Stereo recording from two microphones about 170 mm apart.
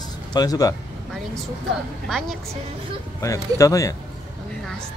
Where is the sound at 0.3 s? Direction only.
20° left (ahead or behind).